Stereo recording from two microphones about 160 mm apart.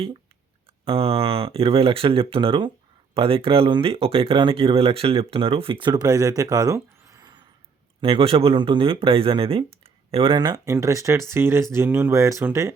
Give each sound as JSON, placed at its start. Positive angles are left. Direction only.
{"t": 0.9, "sound": "speech", "side_deg": -35}
{"t": 8.0, "sound": "speech", "side_deg": -35}